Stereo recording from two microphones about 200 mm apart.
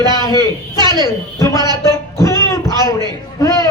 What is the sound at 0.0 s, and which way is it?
Speech, 20° right (ahead or behind).